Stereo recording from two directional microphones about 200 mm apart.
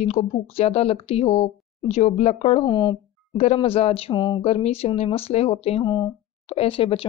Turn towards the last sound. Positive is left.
turn(degrees=25)  # may be behind; listen again after turning